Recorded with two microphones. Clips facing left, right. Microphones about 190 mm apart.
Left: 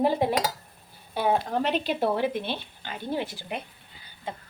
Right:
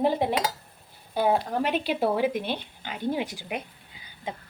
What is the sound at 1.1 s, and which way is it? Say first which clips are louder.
Speech: right 1 dB; 10° right (ahead or behind).